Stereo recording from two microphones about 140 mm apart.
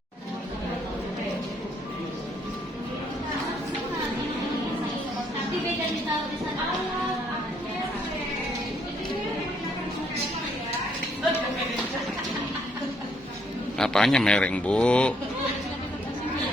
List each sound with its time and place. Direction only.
13.7 s a man's voice: 5° left (ahead or behind)